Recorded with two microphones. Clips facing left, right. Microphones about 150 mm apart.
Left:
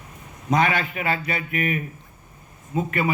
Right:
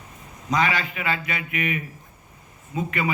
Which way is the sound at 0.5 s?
50° left (ahead or behind).